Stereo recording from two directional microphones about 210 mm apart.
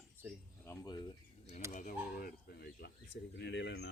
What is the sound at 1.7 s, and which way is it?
Speech, 45° left (ahead or behind).